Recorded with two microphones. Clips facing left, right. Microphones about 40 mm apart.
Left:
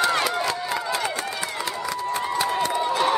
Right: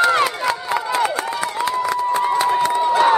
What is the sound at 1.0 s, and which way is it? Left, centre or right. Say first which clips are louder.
Run: right 6 dB; centre.